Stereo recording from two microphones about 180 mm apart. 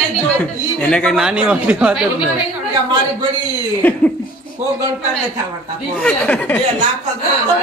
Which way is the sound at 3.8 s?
10° left (ahead or behind).